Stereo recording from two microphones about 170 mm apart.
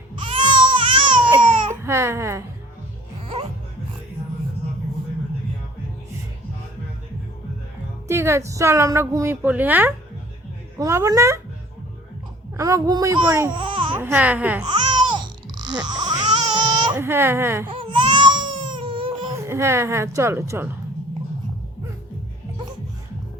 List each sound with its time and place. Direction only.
0.2 s baby cry: 30° right (ahead or behind)
1.7 s speech: 15° right (ahead or behind)
8.0 s a woman's voice: 15° right (ahead or behind)
12.5 s speech: 20° right (ahead or behind)
13.5 s babbling: 30° right (ahead or behind)
14.0 s a woman's voice: 10° right (ahead or behind)
14.6 s babbling: 25° right (ahead or behind)
15.6 s crying: 25° right (ahead or behind)
16.9 s a woman's voice: 15° right (ahead or behind)
17.7 s baby cry: 30° right (ahead or behind)
19.4 s a woman's voice: 15° right (ahead or behind)